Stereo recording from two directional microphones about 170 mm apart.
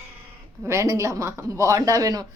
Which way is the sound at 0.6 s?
15° right (ahead or behind).